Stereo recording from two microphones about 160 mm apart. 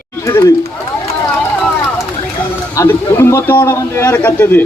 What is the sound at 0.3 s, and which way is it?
Speech, 20° left (ahead or behind).